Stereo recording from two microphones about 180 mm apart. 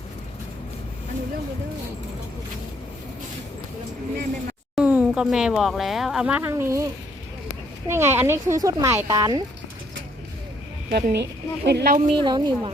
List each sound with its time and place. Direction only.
4.7 s speech: 5° right (ahead or behind)
7.9 s speech: 15° right (ahead or behind)
10.9 s speech: 65° right (ahead or behind)
12.0 s a woman's voice: 25° right (ahead or behind)